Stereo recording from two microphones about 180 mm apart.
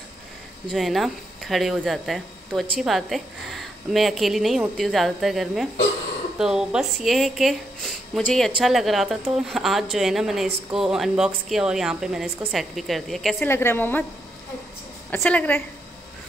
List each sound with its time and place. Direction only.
0.7 s speech: centre (ahead or behind)
13.5 s a woman's voice: 15° left (ahead or behind)
15.0 s a woman's voice: 10° left (ahead or behind)